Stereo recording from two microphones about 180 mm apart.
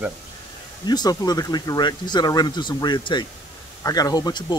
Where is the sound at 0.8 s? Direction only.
25° left (ahead or behind).